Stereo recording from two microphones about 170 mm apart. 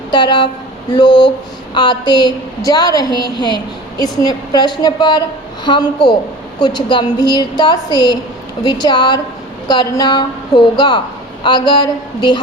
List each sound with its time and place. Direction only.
0.1 s a woman's voice: 25° left (ahead or behind)